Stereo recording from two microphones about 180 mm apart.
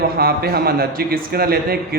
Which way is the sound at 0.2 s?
60° right (ahead or behind).